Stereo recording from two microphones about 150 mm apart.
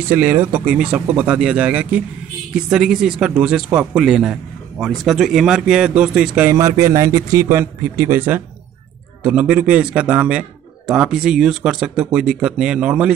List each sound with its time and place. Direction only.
0.1 s speech: 15° right (ahead or behind)
6.5 s a man's voice: 20° right (ahead or behind)